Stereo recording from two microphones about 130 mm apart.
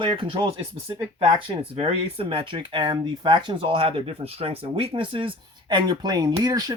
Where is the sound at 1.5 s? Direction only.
45° right (ahead or behind).